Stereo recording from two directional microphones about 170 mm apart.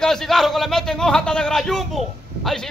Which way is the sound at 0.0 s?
5° left (ahead or behind).